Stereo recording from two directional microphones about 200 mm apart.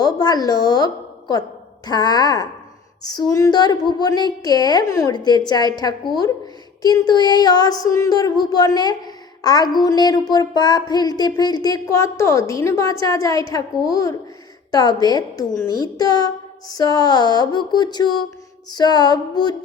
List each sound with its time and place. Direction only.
0.0 s speech: 20° left (ahead or behind)
1.9 s speech: 20° left (ahead or behind)